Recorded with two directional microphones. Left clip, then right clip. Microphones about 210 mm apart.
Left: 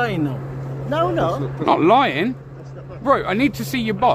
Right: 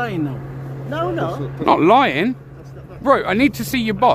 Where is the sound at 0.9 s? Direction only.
55° left (ahead or behind).